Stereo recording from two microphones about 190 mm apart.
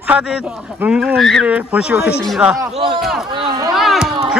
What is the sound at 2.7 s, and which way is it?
Speech, 30° right (ahead or behind).